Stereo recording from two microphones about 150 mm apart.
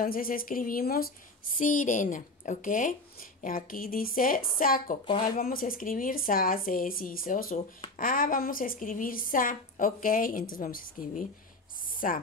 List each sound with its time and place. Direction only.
0.0 s speech: 75° left (ahead or behind)
1.6 s speech: 60° left (ahead or behind)
11.9 s a sound: 70° left (ahead or behind)